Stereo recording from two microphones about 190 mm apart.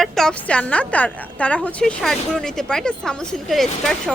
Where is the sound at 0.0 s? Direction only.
Centre (ahead or behind).